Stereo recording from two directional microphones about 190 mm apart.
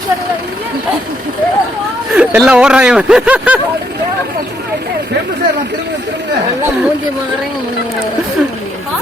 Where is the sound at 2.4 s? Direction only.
5° right (ahead or behind).